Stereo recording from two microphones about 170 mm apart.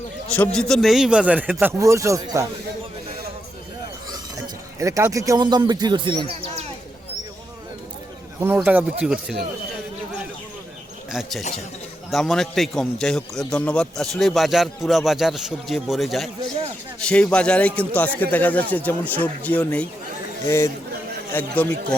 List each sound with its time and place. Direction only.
0.3 s a man's voice: 10° left (ahead or behind); by 2.5 s 20° right (ahead or behind)
4.8 s speech: 20° right (ahead or behind); by 6.7 s 35° right (ahead or behind)
8.4 s a man's voice: 10° right (ahead or behind)
11.1 s a man's voice: centre (ahead or behind)
21.3 s speech: 10° left (ahead or behind)